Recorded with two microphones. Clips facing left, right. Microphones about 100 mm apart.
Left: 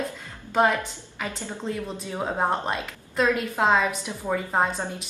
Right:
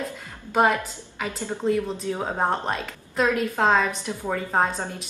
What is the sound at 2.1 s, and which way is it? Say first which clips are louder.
A woman's voice: left 1 dB; centre (ahead or behind).